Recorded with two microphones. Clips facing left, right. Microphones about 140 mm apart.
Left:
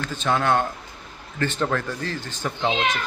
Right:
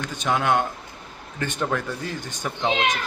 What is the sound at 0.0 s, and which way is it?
Speech, 15° right (ahead or behind).